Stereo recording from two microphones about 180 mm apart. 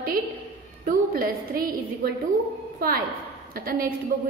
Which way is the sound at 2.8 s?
55° right (ahead or behind).